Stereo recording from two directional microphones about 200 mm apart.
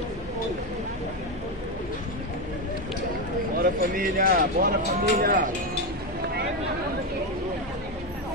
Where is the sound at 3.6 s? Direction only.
45° right (ahead or behind).